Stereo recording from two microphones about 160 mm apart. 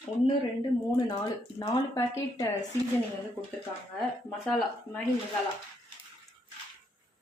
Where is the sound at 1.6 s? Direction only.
20° left (ahead or behind).